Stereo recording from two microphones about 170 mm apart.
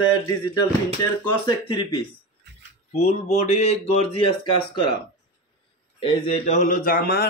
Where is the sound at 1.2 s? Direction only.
25° left (ahead or behind).